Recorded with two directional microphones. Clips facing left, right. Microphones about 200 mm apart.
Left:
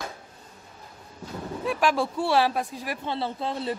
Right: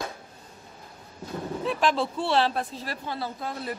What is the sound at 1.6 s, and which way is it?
Speech, 10° left (ahead or behind).